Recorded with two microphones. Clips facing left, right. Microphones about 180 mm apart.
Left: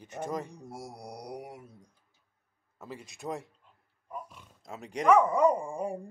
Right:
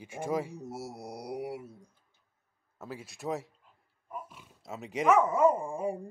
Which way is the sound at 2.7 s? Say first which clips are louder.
Right 1 dB; centre (ahead or behind).